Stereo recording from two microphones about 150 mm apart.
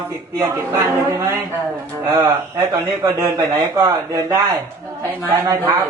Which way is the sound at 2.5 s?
25° right (ahead or behind).